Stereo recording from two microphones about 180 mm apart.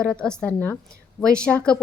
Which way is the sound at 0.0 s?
5° left (ahead or behind).